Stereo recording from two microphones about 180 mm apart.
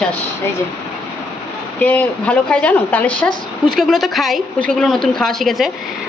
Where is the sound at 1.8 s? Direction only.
10° left (ahead or behind).